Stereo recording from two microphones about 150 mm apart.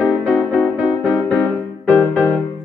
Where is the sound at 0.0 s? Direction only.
Centre (ahead or behind).